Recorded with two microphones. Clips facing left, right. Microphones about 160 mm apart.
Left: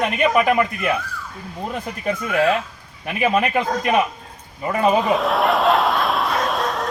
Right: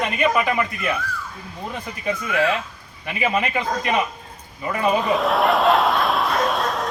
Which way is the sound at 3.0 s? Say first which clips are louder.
Left 3 dB; 45° left (ahead or behind).